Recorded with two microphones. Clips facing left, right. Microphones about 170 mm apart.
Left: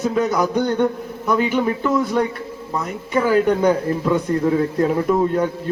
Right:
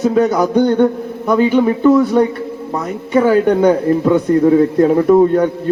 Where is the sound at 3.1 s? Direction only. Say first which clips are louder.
Right 5 dB; 35° right (ahead or behind).